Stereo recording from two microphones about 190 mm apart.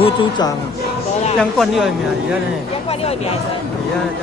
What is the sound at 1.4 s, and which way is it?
Speech, centre (ahead or behind).